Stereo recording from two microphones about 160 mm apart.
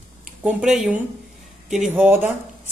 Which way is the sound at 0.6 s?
5° right (ahead or behind).